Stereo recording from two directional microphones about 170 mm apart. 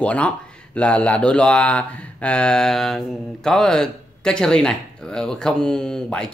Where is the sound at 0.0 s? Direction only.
5° left (ahead or behind).